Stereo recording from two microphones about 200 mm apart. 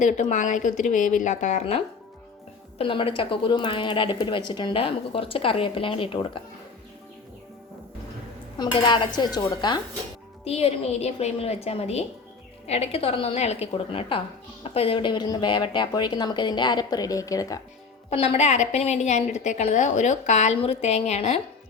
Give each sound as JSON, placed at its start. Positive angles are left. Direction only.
{"t": 0.0, "sound": "a woman's voice", "side_deg": 40}
{"t": 8.5, "sound": "a woman's voice", "side_deg": 25}
{"t": 18.1, "sound": "a woman's voice", "side_deg": 30}